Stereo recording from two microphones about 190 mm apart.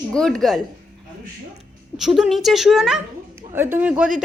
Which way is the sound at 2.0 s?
5° right (ahead or behind).